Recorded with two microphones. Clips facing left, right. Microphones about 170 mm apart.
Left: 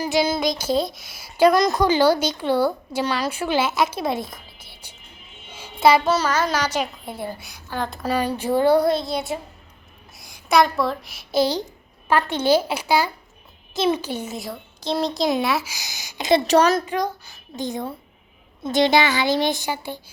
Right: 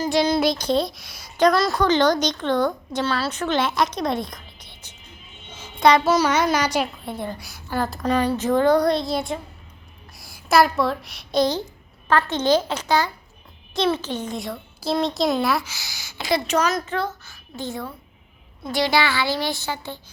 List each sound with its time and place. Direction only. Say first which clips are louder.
0.0 s a woman's voice: right 1 dB; 5° left (ahead or behind)
5.5 s a sound: even; 10° left (ahead or behind)
6.1 s a child's voice: right 2 dB; 10° right (ahead or behind)
7.1 s a woman's voice: right 1 dB; 5° left (ahead or behind)
7.7 s a child's voice: right 3 dB; 5° right (ahead or behind)
7.9 s a woman's voice: right 2 dB; 10° left (ahead or behind)
15.7 s a woman's voice: left 2 dB; 20° left (ahead or behind)
16.5 s a woman's voice: left 6 dB; 30° left (ahead or behind)
16.8 s a child's voice: left 2 dB; 15° left (ahead or behind)